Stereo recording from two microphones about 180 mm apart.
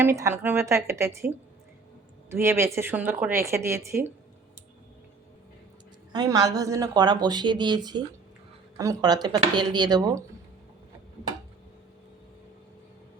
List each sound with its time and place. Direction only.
0.0 s a woman's voice: 15° right (ahead or behind)
2.3 s a woman's voice: 15° right (ahead or behind)
6.1 s speech: 20° right (ahead or behind)